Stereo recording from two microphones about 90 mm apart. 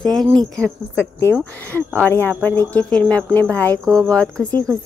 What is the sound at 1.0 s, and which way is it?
Speech, 30° left (ahead or behind).